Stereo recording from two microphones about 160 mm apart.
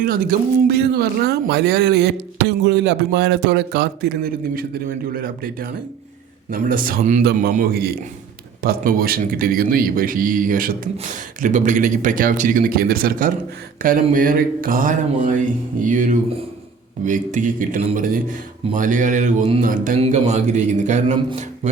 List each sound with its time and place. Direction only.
0.0 s a man's voice: 65° right (ahead or behind)
7.2 s a man's voice: 80° right
8.6 s a man's voice: 65° right (ahead or behind)
20.0 s speech: 45° right (ahead or behind)